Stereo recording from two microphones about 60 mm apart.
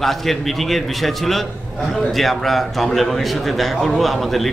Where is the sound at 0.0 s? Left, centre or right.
Centre.